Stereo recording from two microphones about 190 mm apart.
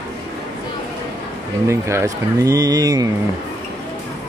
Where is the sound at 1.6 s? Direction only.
15° right (ahead or behind).